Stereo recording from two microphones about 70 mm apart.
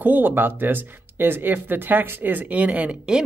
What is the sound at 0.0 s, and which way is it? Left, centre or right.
Speech, right.